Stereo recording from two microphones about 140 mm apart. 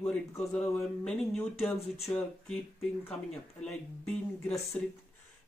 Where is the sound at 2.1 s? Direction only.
25° left (ahead or behind).